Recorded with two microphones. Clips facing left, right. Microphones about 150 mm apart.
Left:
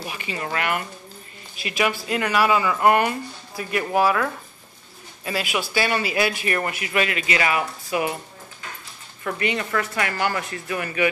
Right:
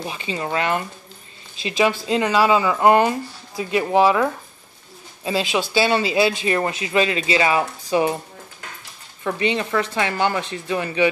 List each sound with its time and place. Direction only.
0.0 s a man's voice: 25° right (ahead or behind)
9.2 s a man's voice: 20° right (ahead or behind)